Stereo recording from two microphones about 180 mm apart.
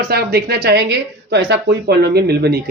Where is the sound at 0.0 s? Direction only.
55° right (ahead or behind).